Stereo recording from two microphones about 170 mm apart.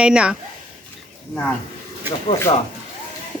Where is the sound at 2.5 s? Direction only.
35° left (ahead or behind).